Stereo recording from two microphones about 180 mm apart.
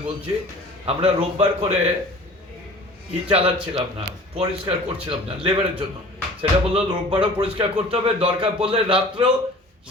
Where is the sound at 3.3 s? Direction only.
30° right (ahead or behind).